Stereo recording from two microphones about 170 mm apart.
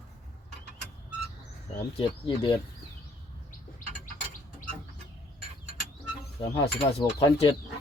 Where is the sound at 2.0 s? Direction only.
30° left (ahead or behind).